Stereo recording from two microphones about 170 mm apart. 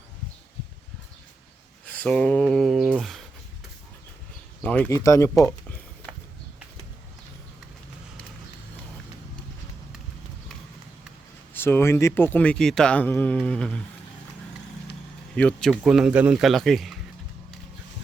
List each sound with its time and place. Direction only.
1.9 s speech: 5° left (ahead or behind)
4.6 s speech: 10° left (ahead or behind)
4.9 s speech: 20° left (ahead or behind)
5.5 s a sound: 10° left (ahead or behind)
11.5 s a man's voice: 15° left (ahead or behind)
15.4 s a man's voice: 5° left (ahead or behind)